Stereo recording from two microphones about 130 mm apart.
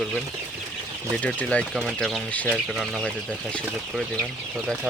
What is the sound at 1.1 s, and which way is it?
Speech, 10° left (ahead or behind).